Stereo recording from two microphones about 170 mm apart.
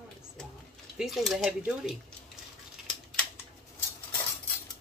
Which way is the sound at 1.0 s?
Centre (ahead or behind).